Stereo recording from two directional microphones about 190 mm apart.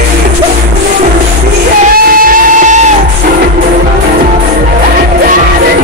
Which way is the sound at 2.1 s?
45° right (ahead or behind).